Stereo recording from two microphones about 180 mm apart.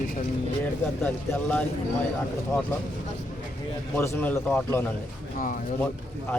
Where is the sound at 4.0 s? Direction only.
15° left (ahead or behind).